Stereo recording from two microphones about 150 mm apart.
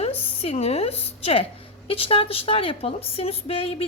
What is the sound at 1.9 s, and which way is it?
A woman's voice, 40° left (ahead or behind).